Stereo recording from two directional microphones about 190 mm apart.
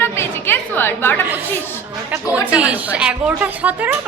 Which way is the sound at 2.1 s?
5° right (ahead or behind).